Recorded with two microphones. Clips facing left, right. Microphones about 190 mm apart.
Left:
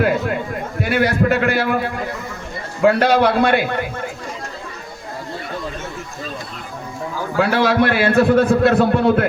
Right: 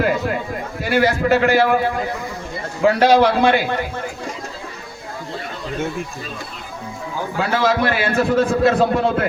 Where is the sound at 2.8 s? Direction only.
60° left (ahead or behind).